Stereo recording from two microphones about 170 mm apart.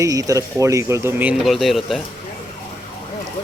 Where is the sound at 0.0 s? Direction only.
20° right (ahead or behind); by 2.0 s centre (ahead or behind).